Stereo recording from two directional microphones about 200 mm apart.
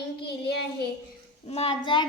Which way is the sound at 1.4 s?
30° left (ahead or behind).